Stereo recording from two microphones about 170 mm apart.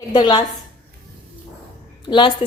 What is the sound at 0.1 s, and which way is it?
Speech, 25° left (ahead or behind).